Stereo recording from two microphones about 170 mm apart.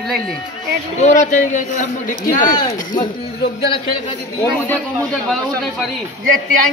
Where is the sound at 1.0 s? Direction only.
45° left (ahead or behind).